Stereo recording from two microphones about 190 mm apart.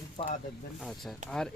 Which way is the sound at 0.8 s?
Centre (ahead or behind).